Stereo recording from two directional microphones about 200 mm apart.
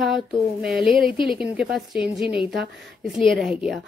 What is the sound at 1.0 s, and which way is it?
Speech, 25° left (ahead or behind).